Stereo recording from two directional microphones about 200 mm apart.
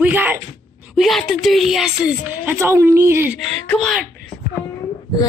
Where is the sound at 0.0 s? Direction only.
10° right (ahead or behind).